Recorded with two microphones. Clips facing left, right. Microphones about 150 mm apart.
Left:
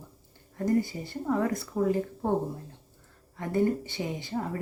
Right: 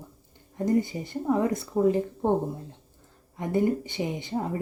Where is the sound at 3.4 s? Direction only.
20° right (ahead or behind).